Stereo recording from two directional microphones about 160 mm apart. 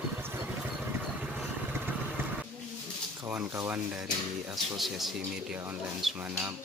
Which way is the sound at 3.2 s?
20° right (ahead or behind).